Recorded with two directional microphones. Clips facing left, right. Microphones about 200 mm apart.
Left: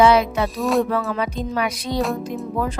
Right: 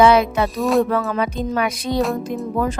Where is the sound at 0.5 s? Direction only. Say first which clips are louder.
Right 2 dB; centre (ahead or behind).